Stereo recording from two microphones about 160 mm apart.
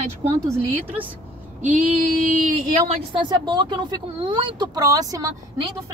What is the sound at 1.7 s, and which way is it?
Female singing, 55° right (ahead or behind).